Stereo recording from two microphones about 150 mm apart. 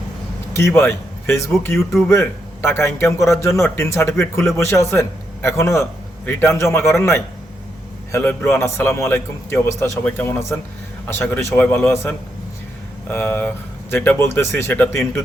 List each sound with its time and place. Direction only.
0.5 s a man's voice: 15° left (ahead or behind)
1.7 s speech: centre (ahead or behind)
2.0 s a man's voice: 15° left (ahead or behind)